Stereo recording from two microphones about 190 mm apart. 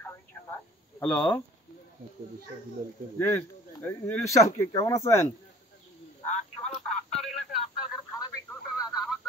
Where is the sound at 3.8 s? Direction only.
10° left (ahead or behind).